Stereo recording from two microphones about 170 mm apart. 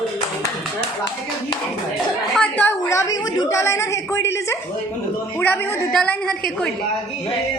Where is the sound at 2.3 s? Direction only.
10° left (ahead or behind).